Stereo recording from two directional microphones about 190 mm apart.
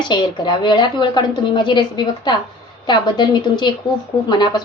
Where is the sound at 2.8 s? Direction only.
25° left (ahead or behind).